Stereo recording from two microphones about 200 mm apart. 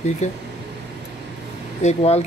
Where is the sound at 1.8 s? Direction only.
35° left (ahead or behind).